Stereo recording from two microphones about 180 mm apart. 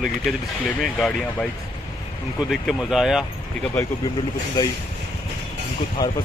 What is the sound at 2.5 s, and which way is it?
Speech, centre (ahead or behind).